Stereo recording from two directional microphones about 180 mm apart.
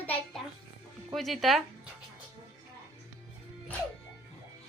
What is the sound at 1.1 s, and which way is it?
Speech, centre (ahead or behind).